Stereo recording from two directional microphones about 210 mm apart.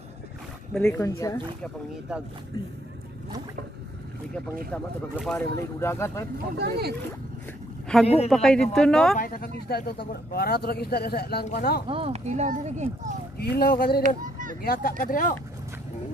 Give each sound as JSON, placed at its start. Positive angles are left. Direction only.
{"t": 0.7, "sound": "speech", "side_deg": 5}
{"t": 1.0, "sound": "speech", "side_deg": 15}
{"t": 1.6, "sound": "speech", "side_deg": -5}
{"t": 5.1, "sound": "speech", "side_deg": 0}
{"t": 5.8, "sound": "speech", "side_deg": 15}
{"t": 6.6, "sound": "speech", "side_deg": -50}
{"t": 7.9, "sound": "speech", "side_deg": 5}
{"t": 9.2, "sound": "speech", "side_deg": 45}
{"t": 11.9, "sound": "speech", "side_deg": -30}
{"t": 13.4, "sound": "speech", "side_deg": 45}
{"t": 14.0, "sound": "speech", "side_deg": -40}
{"t": 14.6, "sound": "speech", "side_deg": 45}